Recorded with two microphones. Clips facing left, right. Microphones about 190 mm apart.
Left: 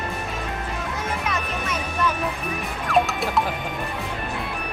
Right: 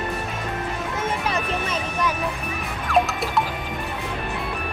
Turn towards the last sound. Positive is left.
turn(degrees=0)  # may be behind; listen again after turning